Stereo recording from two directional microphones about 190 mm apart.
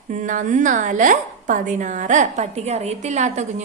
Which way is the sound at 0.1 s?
40° right (ahead or behind).